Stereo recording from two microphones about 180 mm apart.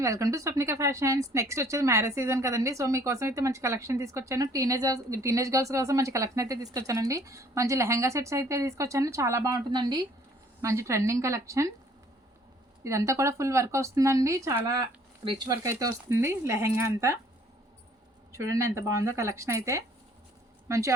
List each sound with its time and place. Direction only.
0.0 s speech: 20° right (ahead or behind)
12.8 s speech: 15° right (ahead or behind)
18.3 s a woman's voice: 15° right (ahead or behind)